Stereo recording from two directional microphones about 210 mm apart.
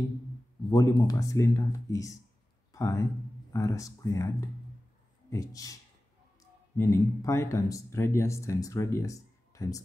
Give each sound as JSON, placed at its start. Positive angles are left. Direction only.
{"t": 0.7, "sound": "speech", "side_deg": 15}
{"t": 6.8, "sound": "speech", "side_deg": 15}